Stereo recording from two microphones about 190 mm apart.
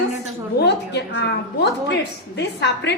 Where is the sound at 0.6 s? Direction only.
65° left (ahead or behind).